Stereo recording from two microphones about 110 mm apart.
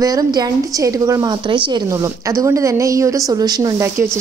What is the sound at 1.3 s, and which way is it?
Speech, 45° right (ahead or behind).